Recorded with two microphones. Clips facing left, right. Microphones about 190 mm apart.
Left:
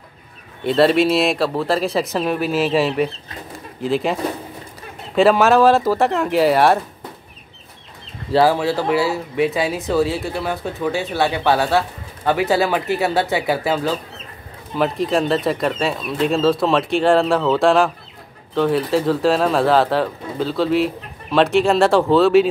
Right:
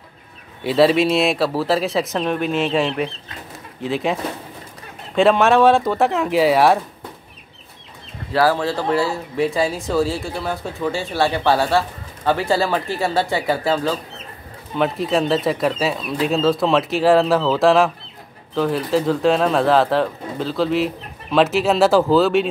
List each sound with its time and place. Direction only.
0.7 s speech: centre (ahead or behind)
3.5 s pigeon: centre (ahead or behind)
5.1 s speech: centre (ahead or behind)
8.3 s speech: 25° left (ahead or behind)
8.5 s speech: 10° left (ahead or behind)